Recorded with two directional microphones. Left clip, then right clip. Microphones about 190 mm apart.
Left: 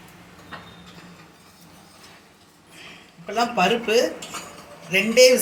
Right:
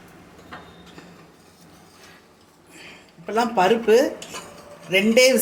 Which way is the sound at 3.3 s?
50° right (ahead or behind).